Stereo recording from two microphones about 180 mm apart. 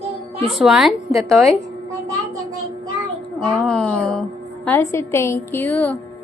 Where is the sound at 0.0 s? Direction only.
35° right (ahead or behind).